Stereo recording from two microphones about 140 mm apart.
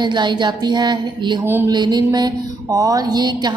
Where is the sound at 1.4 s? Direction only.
15° right (ahead or behind).